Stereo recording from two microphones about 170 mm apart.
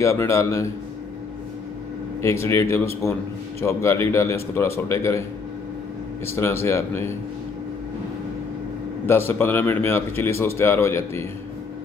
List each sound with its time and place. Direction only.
0.0 s a man's voice: 15° left (ahead or behind)
2.2 s a man's voice: 15° left (ahead or behind)
6.2 s a man's voice: 15° left (ahead or behind)
9.0 s a man's voice: 15° left (ahead or behind)